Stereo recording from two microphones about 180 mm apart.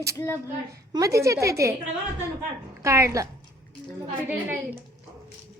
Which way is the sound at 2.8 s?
15° right (ahead or behind).